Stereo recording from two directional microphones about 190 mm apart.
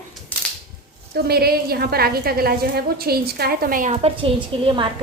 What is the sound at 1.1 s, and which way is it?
A woman's voice, 55° right (ahead or behind).